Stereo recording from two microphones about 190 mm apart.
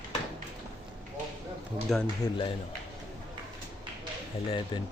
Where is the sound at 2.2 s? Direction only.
20° left (ahead or behind).